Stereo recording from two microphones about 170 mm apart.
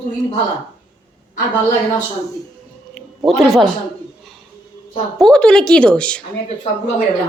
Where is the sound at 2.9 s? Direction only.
Centre (ahead or behind).